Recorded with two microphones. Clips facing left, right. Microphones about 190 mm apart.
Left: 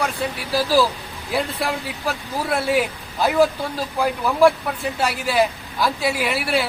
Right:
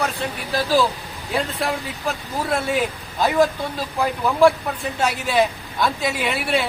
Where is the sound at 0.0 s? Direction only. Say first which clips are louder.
Left 1 dB; 5° left (ahead or behind).